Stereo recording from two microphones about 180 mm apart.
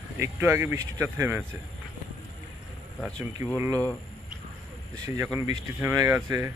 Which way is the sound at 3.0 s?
15° right (ahead or behind).